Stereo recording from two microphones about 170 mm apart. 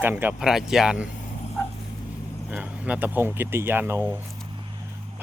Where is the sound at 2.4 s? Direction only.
10° right (ahead or behind).